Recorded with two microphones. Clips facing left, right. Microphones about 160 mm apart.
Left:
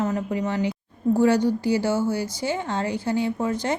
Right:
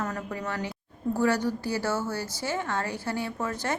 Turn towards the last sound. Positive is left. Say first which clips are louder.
# left 6 dB
turn(degrees=20)  # may be behind; listen again after turning